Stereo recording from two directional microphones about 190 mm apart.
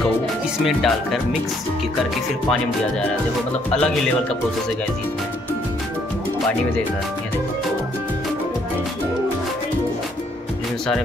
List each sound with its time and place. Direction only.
0.7 s speech: centre (ahead or behind)
3.7 s speech: 5° left (ahead or behind)